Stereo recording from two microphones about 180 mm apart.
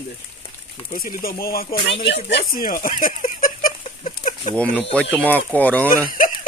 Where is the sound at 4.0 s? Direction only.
40° left (ahead or behind).